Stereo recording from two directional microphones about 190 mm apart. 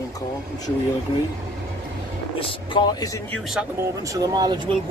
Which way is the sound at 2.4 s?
25° left (ahead or behind).